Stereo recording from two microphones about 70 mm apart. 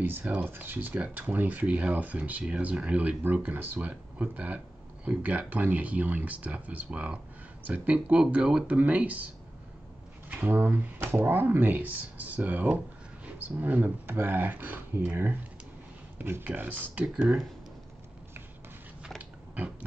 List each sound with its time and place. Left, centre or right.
0.4 s speech: right
10.3 s speech: right